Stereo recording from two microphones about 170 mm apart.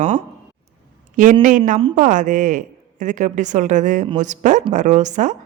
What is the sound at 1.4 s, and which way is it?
A woman's voice, 50° right (ahead or behind).